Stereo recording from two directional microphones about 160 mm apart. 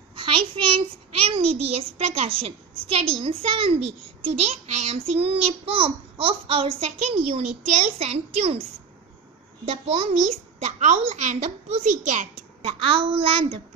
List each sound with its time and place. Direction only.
0.1 s a child's voice: 30° right (ahead or behind)
9.7 s a child's voice: 40° right (ahead or behind)
12.6 s a child's voice: 35° right (ahead or behind)